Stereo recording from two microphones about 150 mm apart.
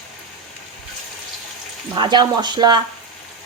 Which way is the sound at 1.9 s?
30° right (ahead or behind).